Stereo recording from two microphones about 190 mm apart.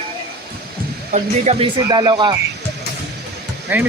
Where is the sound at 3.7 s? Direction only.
10° right (ahead or behind).